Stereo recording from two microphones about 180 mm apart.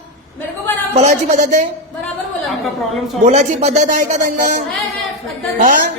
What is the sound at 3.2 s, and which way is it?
Speech, 40° right (ahead or behind).